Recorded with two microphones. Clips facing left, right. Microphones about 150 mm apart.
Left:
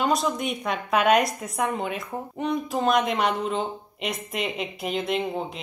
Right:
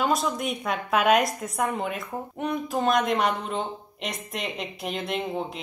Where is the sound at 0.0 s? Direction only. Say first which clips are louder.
Left 1 dB; centre (ahead or behind).